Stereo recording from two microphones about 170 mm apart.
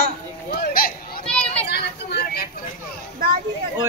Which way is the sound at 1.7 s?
70° left (ahead or behind).